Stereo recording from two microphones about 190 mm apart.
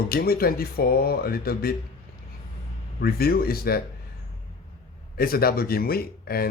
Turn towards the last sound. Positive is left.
turn(degrees=50)  # may be behind; listen again after turning